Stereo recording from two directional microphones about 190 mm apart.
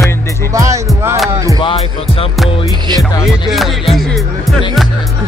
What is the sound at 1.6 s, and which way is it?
Speech, 30° left (ahead or behind).